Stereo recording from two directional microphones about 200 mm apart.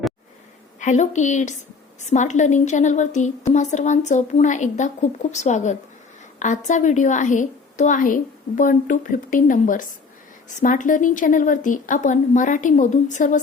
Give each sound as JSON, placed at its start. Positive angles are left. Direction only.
{"t": 0.8, "sound": "a woman's voice", "side_deg": 35}